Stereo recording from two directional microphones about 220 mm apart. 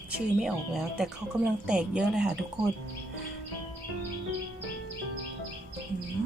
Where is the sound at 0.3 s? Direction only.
Centre (ahead or behind).